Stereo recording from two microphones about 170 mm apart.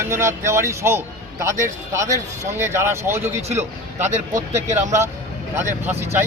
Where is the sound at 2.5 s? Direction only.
15° right (ahead or behind).